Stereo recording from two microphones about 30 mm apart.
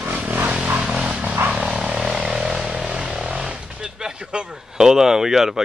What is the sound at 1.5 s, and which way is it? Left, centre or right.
Vehicle, right.